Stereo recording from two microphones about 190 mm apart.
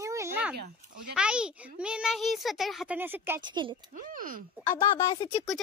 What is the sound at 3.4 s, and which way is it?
Speech, 25° right (ahead or behind).